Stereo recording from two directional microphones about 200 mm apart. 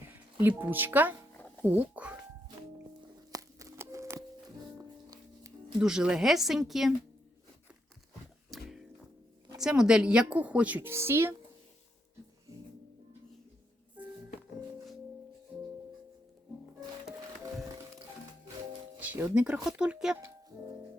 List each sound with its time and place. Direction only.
0.3 s a woman's voice: 10° right (ahead or behind)
3.3 s a sound: 15° right (ahead or behind)
4.8 s music: 15° right (ahead or behind)
5.8 s speech: 5° right (ahead or behind)
8.4 s music: centre (ahead or behind)
9.6 s a woman's voice: 5° right (ahead or behind)
19.0 s speech: 10° right (ahead or behind)